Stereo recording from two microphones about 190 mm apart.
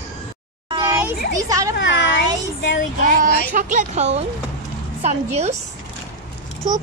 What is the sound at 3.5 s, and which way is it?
Speech, 40° right (ahead or behind).